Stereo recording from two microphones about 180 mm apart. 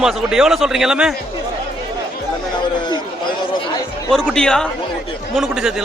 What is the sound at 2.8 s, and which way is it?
Speech, 25° left (ahead or behind).